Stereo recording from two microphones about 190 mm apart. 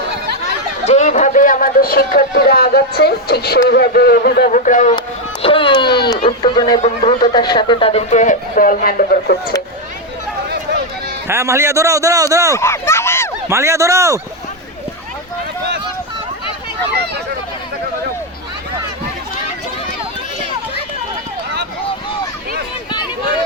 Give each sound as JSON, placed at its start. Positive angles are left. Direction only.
{"t": 0.9, "sound": "speech", "side_deg": 35}
{"t": 4.9, "sound": "speech", "side_deg": 30}
{"t": 11.3, "sound": "a man's voice", "side_deg": -15}
{"t": 12.5, "sound": "a sound", "side_deg": 15}
{"t": 13.5, "sound": "a man's voice", "side_deg": -15}
{"t": 22.9, "sound": "a sound", "side_deg": 25}